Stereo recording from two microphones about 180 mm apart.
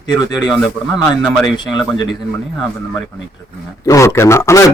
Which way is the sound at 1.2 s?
Centre (ahead or behind).